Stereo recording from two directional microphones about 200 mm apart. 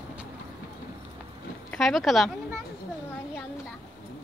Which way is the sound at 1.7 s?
Centre (ahead or behind).